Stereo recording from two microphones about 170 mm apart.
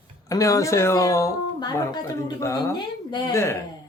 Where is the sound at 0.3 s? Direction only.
20° left (ahead or behind).